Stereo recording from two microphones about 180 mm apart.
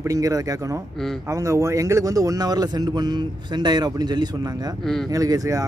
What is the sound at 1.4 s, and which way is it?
A man's voice, 15° right (ahead or behind).